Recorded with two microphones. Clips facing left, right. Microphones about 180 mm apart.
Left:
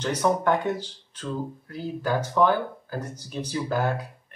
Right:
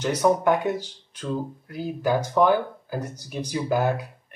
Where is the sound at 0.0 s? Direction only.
10° right (ahead or behind).